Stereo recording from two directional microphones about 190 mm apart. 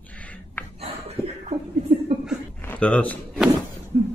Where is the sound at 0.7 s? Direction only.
30° right (ahead or behind).